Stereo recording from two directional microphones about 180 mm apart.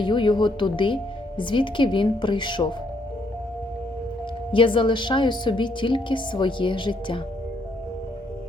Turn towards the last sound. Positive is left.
turn(degrees=30)  # may be behind; listen again after turning